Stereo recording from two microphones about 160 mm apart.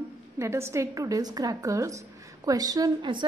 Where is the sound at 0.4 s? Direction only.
15° right (ahead or behind).